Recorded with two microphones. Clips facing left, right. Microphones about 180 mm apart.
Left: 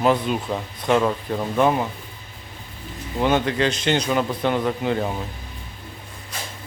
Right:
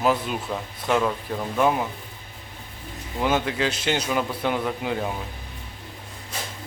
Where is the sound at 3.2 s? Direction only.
5° right (ahead or behind).